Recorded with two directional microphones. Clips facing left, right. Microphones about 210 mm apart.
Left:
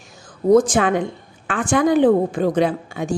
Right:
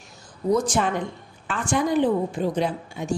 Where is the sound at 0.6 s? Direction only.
90° left.